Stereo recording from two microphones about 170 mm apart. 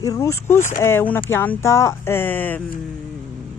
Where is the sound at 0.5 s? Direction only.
45° left (ahead or behind).